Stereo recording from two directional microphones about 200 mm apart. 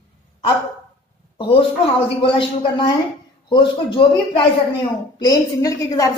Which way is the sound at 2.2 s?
25° left (ahead or behind).